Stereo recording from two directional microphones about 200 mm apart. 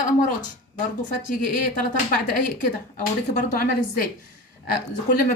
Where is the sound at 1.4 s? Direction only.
40° left (ahead or behind).